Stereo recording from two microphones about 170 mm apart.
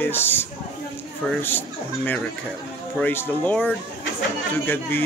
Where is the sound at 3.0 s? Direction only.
10° left (ahead or behind).